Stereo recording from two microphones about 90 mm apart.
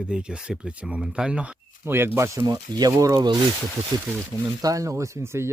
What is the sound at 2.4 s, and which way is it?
Speech, 45° right (ahead or behind).